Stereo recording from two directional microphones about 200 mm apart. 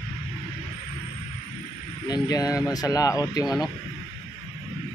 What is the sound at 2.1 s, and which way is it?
Speech, 20° left (ahead or behind).